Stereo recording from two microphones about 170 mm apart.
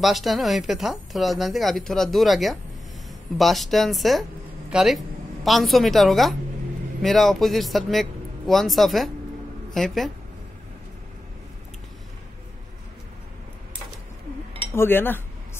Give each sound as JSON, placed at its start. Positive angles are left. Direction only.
{"t": 0.0, "sound": "a woman's voice", "side_deg": 0}
{"t": 14.8, "sound": "speech", "side_deg": 10}